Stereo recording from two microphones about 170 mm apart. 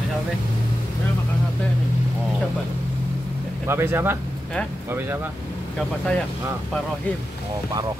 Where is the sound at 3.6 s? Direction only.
15° right (ahead or behind).